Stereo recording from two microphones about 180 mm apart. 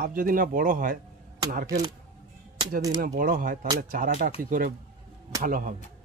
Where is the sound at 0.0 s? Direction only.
50° right (ahead or behind).